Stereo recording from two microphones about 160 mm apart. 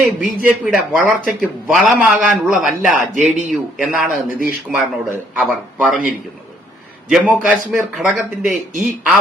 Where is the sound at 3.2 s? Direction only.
50° right (ahead or behind).